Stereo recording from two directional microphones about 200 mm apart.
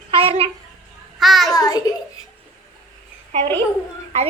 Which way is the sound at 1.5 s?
20° left (ahead or behind).